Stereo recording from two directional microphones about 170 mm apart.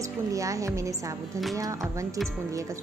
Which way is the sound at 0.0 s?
20° right (ahead or behind).